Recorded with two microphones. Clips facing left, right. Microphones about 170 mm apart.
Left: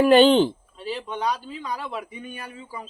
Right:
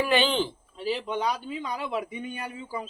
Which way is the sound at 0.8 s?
20° right (ahead or behind).